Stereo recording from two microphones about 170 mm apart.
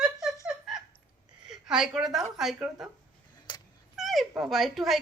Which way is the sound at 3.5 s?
25° left (ahead or behind).